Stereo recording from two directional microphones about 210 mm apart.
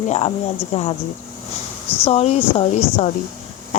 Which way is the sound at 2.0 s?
30° left (ahead or behind).